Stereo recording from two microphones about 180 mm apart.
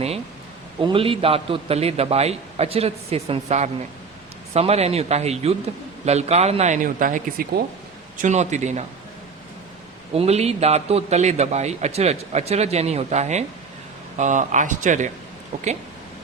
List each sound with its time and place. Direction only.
0.8 s a man's voice: 30° right (ahead or behind)
10.2 s a man's voice: 35° right (ahead or behind)